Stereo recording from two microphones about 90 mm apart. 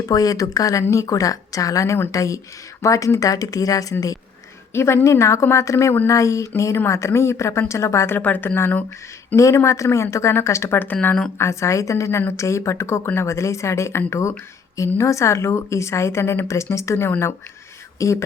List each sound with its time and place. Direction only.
0.0 s a woman's voice: 40° left (ahead or behind)
4.7 s a woman's voice: 30° left (ahead or behind)
8.2 s a woman's voice: 20° left (ahead or behind)
9.3 s a woman's voice: 35° left (ahead or behind); by 11.3 s 15° left (ahead or behind)
11.3 s a woman's voice: 35° left (ahead or behind)